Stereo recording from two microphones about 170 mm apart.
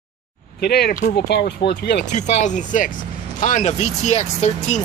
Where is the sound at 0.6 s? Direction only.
70° left (ahead or behind).